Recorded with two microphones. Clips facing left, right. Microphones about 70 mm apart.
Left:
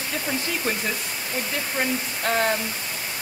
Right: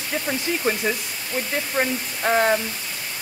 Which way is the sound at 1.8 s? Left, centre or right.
Centre.